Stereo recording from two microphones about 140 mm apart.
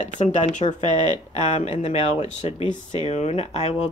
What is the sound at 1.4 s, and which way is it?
Speech, 50° left (ahead or behind).